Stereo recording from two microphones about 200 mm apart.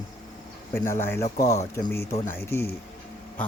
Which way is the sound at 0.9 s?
10° left (ahead or behind).